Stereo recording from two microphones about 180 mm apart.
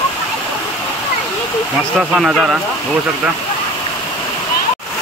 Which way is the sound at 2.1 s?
Centre (ahead or behind).